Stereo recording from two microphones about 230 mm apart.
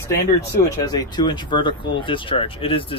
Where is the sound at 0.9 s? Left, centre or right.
Centre.